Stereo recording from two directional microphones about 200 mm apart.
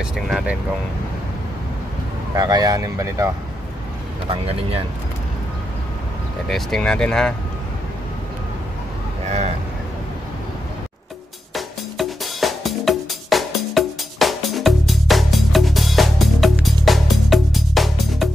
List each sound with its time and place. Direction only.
2.3 s speech: 20° right (ahead or behind)
4.3 s speech: 30° right (ahead or behind)
6.5 s speech: 5° left (ahead or behind)
11.5 s music: centre (ahead or behind)